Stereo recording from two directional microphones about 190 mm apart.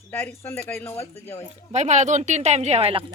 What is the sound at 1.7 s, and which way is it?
Speech, 35° right (ahead or behind).